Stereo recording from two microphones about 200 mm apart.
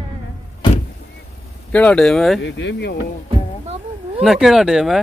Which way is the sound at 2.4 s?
60° left (ahead or behind).